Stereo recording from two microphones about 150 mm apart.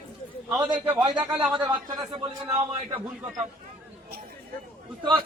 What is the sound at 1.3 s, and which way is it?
Speech, 5° right (ahead or behind).